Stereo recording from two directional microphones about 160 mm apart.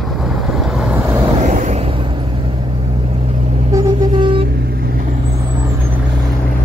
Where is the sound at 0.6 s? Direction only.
Centre (ahead or behind).